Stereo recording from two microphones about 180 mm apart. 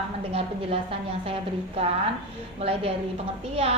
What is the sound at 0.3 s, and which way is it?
A woman's voice, 35° right (ahead or behind).